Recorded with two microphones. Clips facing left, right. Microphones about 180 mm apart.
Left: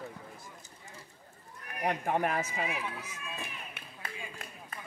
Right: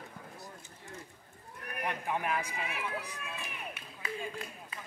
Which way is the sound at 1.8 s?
50° left (ahead or behind).